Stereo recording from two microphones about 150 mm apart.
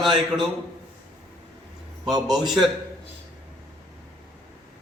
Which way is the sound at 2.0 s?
25° right (ahead or behind).